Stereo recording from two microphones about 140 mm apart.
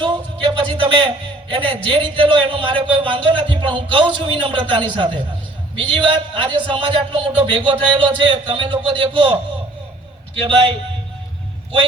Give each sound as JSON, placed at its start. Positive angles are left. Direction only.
{"t": 0.0, "sound": "a man's voice", "side_deg": -35}
{"t": 10.4, "sound": "a man's voice", "side_deg": -40}